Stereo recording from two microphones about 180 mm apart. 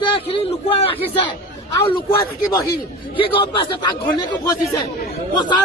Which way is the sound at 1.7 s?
20° left (ahead or behind).